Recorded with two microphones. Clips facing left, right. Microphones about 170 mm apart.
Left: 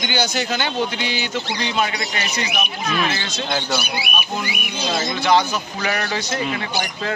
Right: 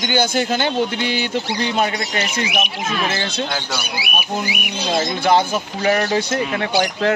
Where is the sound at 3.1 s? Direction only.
60° right (ahead or behind).